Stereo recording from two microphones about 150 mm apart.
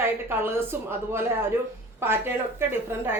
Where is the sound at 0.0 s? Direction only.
15° right (ahead or behind).